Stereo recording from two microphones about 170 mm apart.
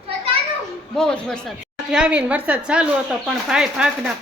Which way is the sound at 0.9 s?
5° left (ahead or behind).